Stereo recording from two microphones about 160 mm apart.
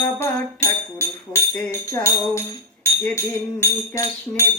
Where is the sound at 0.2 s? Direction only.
15° left (ahead or behind).